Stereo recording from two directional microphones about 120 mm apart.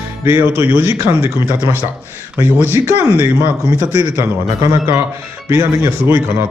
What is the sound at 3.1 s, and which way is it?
Speech, 20° right (ahead or behind).